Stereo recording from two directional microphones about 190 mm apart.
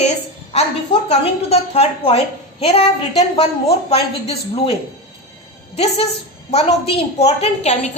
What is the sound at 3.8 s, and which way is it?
Speech, 30° left (ahead or behind).